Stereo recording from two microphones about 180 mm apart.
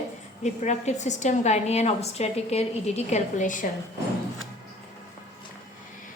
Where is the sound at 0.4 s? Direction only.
40° left (ahead or behind).